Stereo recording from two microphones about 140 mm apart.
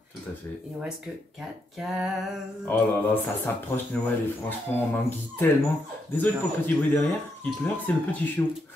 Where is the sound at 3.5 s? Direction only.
15° left (ahead or behind).